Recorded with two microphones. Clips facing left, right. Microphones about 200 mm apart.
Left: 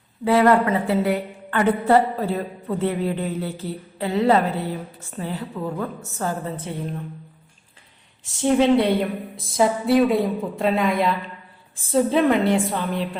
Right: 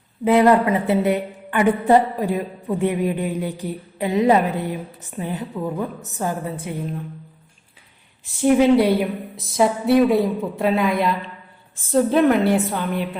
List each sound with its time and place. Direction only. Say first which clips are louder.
0.3 s a woman's voice: right 2 dB; 20° right (ahead or behind)
8.4 s a woman's voice: right 2 dB; 5° right (ahead or behind)